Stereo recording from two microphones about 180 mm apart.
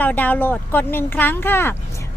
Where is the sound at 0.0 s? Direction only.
10° left (ahead or behind).